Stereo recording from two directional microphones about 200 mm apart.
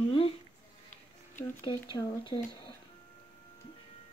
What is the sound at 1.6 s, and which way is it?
Speech, 20° left (ahead or behind).